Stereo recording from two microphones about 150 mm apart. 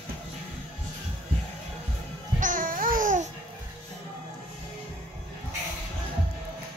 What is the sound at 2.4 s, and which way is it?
Babbling, 65° right (ahead or behind).